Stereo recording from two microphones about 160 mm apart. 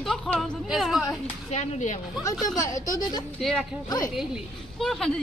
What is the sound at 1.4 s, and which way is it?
Speech, 50° left (ahead or behind).